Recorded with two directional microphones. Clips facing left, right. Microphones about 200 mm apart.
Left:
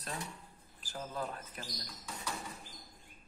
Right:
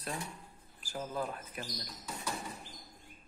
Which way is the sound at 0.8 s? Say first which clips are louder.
Right 3 dB; 10° right (ahead or behind).